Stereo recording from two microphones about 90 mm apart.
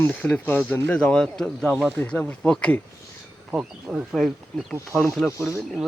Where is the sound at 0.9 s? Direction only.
10° left (ahead or behind).